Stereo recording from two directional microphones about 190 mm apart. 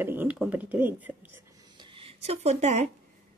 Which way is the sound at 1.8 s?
30° right (ahead or behind).